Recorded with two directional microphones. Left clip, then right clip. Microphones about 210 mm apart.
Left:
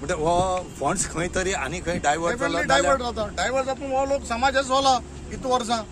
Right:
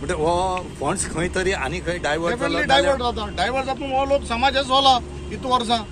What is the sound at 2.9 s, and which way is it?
A man's voice, 15° left (ahead or behind).